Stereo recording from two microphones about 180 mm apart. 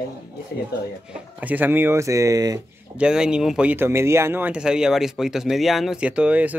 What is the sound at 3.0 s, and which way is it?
Speech, 5° right (ahead or behind).